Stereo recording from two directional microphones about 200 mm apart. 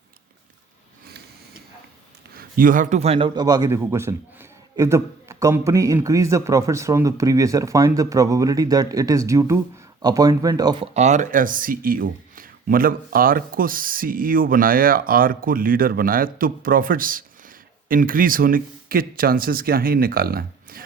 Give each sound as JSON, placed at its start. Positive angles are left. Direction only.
{"t": 2.3, "sound": "a man's voice", "side_deg": -45}
{"t": 10.9, "sound": "speech", "side_deg": -35}